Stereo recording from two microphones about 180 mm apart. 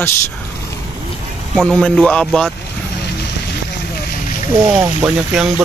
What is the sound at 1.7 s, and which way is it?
Speech, 5° left (ahead or behind).